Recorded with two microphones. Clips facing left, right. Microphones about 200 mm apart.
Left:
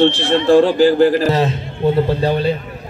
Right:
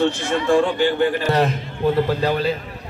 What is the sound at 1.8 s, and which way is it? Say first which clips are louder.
Speech: left 3 dB; 25° left (ahead or behind).